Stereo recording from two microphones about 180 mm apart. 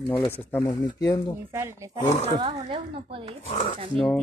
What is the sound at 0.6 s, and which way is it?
Speech, 20° left (ahead or behind).